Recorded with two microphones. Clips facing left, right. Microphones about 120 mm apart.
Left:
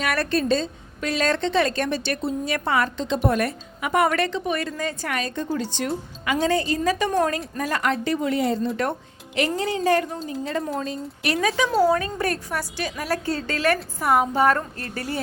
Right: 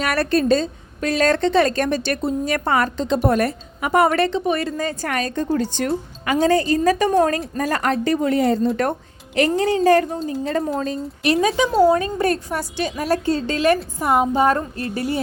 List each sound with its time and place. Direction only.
0.0 s a woman's voice: 40° right (ahead or behind)
11.2 s a woman's voice: 25° right (ahead or behind)